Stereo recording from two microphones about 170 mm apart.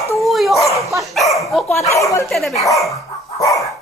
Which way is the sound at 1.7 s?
15° left (ahead or behind).